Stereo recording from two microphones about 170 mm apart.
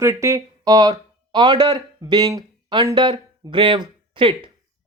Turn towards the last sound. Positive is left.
turn(degrees=-30)  # may be behind; listen again after turning